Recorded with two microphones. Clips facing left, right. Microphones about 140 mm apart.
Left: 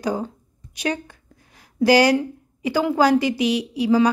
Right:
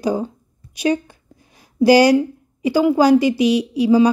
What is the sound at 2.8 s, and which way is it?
Speech, 15° right (ahead or behind).